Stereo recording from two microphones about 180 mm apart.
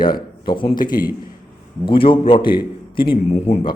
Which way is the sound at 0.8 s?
50° left (ahead or behind).